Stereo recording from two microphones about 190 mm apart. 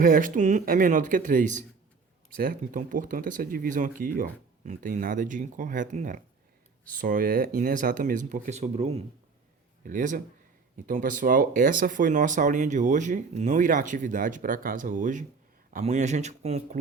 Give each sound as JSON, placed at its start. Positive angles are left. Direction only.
{"t": 0.0, "sound": "speech", "side_deg": -45}